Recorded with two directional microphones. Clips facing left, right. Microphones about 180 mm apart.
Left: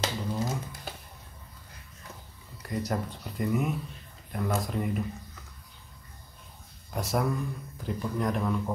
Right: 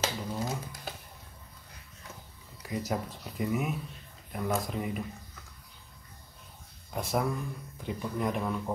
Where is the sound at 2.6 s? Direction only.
Centre (ahead or behind).